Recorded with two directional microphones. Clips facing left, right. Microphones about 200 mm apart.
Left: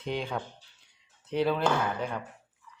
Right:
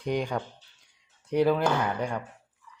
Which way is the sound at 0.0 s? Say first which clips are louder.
Right 4 dB; 15° right (ahead or behind).